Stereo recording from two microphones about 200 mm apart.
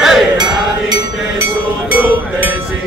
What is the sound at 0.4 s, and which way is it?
Music, 20° right (ahead or behind).